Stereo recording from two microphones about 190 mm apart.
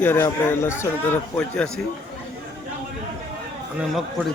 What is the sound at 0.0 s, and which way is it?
A man's voice, 10° left (ahead or behind).